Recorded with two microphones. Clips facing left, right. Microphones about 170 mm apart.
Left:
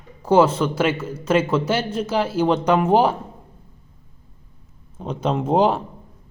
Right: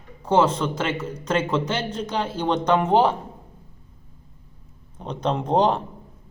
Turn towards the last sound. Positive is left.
turn(degrees=5)  # may be behind; listen again after turning